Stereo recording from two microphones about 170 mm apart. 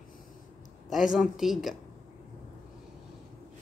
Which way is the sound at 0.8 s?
Centre (ahead or behind).